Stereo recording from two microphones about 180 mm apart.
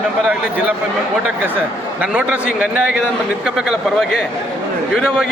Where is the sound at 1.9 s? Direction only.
10° right (ahead or behind).